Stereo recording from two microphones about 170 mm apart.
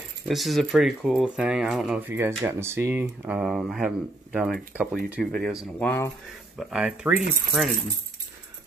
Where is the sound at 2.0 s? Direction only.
15° right (ahead or behind).